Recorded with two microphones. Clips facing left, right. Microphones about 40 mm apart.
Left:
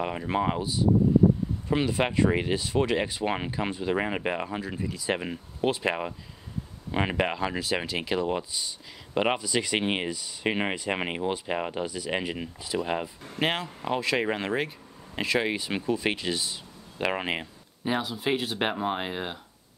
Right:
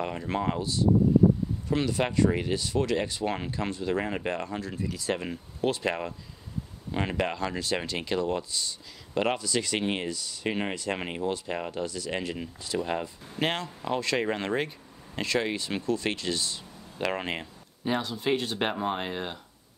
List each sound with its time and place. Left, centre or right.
0.0 s speech: centre